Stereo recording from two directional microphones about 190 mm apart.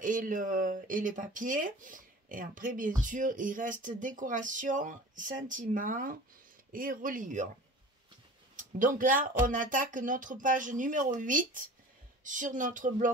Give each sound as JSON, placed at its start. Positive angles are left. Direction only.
{"t": 0.0, "sound": "speech", "side_deg": -45}
{"t": 8.7, "sound": "speech", "side_deg": -45}